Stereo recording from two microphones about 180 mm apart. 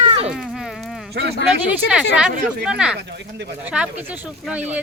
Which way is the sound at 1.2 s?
75° right (ahead or behind).